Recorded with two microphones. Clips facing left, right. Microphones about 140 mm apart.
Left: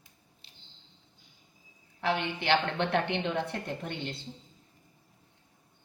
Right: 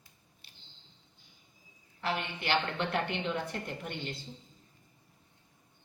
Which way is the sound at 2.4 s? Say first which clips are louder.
Left 4 dB; 65° left (ahead or behind).